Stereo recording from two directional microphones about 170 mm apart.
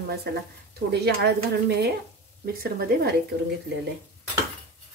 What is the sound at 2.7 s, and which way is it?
Speech, 65° right (ahead or behind).